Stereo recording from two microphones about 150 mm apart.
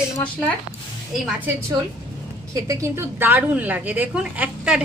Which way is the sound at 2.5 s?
20° right (ahead or behind).